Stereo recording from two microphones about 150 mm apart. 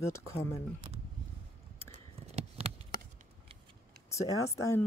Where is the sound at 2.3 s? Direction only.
45° right (ahead or behind).